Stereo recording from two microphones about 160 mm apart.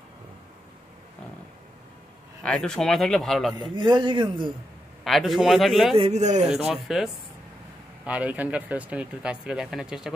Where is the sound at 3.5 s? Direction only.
30° right (ahead or behind).